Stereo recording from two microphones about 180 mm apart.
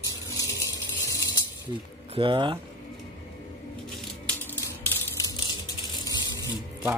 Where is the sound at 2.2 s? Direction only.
25° right (ahead or behind).